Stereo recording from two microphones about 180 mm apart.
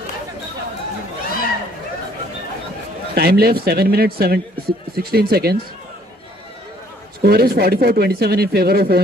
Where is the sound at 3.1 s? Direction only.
60° right (ahead or behind).